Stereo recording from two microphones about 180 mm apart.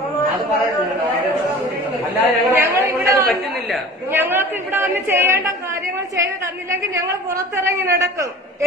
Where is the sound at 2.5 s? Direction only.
20° right (ahead or behind).